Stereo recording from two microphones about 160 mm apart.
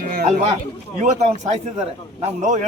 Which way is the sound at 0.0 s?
70° right (ahead or behind).